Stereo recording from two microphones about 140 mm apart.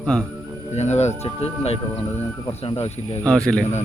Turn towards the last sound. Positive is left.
turn(degrees=5)  # may be behind; listen again after turning